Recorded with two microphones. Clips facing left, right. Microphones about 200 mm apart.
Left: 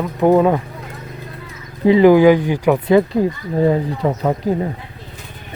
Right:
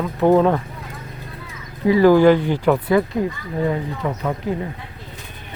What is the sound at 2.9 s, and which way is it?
Speech, 30° left (ahead or behind).